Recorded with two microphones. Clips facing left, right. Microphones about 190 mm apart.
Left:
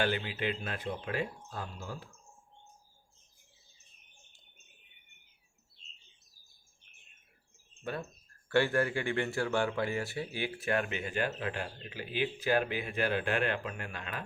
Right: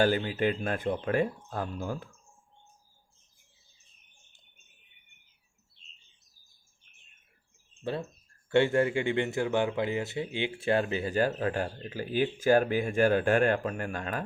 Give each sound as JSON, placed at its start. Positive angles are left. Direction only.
{"t": 0.0, "sound": "speech", "side_deg": -40}
{"t": 7.8, "sound": "speech", "side_deg": -30}